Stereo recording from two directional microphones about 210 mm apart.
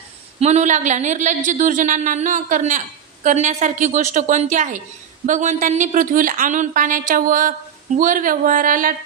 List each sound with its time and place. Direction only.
0.4 s a woman's voice: 35° right (ahead or behind)